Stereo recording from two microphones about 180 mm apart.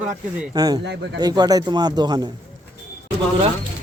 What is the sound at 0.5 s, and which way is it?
A man's voice, 20° right (ahead or behind).